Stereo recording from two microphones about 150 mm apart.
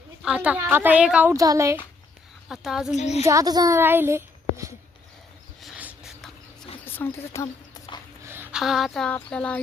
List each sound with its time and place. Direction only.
0.2 s a woman's voice: 5° right (ahead or behind)
1.3 s speech: 20° right (ahead or behind)
2.5 s speech: 5° right (ahead or behind)
2.9 s a woman's voice: 50° left (ahead or behind)
3.2 s a woman's voice: 25° right (ahead or behind)
5.5 s a sound: 5° right (ahead or behind)
6.8 s speech: 15° left (ahead or behind)
7.4 s a sound: 30° left (ahead or behind)
8.2 s a sound: 15° right (ahead or behind)
8.5 s speech: centre (ahead or behind)